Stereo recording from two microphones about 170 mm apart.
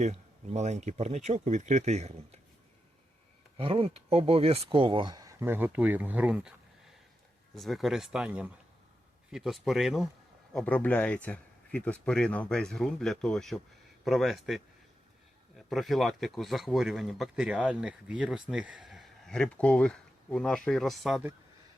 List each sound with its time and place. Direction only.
0.0 s speech: 40° right (ahead or behind)
3.6 s speech: 30° right (ahead or behind); by 6.5 s 5° right (ahead or behind)
7.5 s speech: centre (ahead or behind)